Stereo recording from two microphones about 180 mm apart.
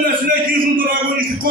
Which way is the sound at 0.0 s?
55° right (ahead or behind).